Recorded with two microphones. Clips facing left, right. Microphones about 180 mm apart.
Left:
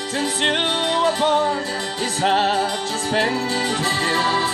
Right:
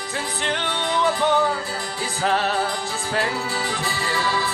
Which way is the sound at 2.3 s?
30° left (ahead or behind).